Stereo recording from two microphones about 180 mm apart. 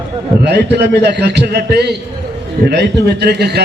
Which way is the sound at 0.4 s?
70° right (ahead or behind).